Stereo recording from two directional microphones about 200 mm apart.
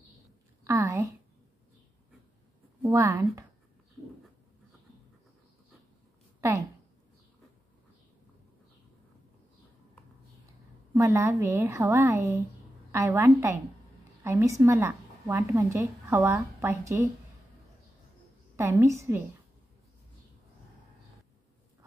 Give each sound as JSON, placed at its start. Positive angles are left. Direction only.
{"t": 0.7, "sound": "a sound", "side_deg": -15}
{"t": 2.9, "sound": "a woman's voice", "side_deg": -15}
{"t": 11.0, "sound": "a woman's voice", "side_deg": -10}
{"t": 18.6, "sound": "a woman's voice", "side_deg": -10}